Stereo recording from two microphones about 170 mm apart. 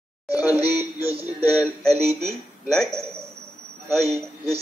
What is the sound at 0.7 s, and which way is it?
Music, 10° right (ahead or behind).